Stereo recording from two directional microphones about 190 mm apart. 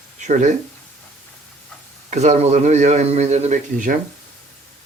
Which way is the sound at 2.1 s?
35° right (ahead or behind).